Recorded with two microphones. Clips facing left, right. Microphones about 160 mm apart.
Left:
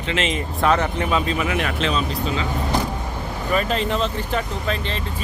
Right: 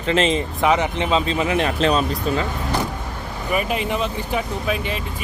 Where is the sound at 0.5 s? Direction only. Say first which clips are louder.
Left 2 dB; 15° right (ahead or behind); by 2.4 s 45° right (ahead or behind).